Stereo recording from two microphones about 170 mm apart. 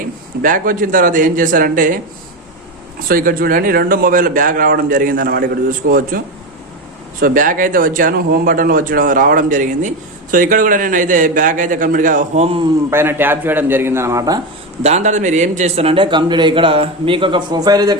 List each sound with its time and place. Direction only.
0.4 s speech: 55° right (ahead or behind)
3.1 s a man's voice: 55° right (ahead or behind)
12.9 s a man's voice: 15° right (ahead or behind)
14.8 s a man's voice: 45° right (ahead or behind); by 17.9 s 25° right (ahead or behind)